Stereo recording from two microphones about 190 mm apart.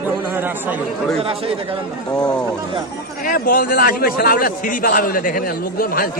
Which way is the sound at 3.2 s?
45° left (ahead or behind).